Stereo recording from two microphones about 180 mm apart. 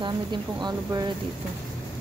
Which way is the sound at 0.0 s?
25° right (ahead or behind).